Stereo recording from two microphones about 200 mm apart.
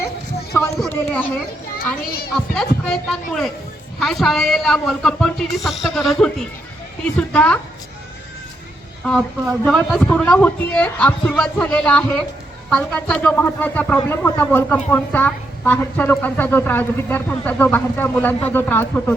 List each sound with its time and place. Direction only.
0.8 s speech: 5° left (ahead or behind)
2.0 s a child's voice: 50° left (ahead or behind)
2.3 s a woman's voice: 5° left (ahead or behind)
9.0 s a woman's voice: 5° left (ahead or behind)